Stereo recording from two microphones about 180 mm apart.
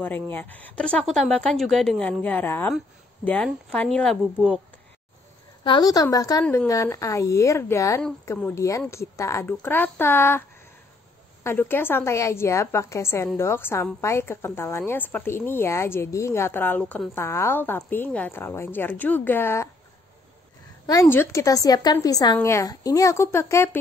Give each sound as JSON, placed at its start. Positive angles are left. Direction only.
{"t": 0.0, "sound": "a woman's voice", "side_deg": 10}
{"t": 5.6, "sound": "a woman's voice", "side_deg": 25}
{"t": 11.4, "sound": "speech", "side_deg": 10}
{"t": 20.8, "sound": "speech", "side_deg": 20}